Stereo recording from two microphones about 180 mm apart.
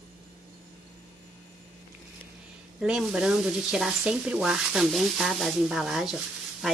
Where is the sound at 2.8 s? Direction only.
5° right (ahead or behind).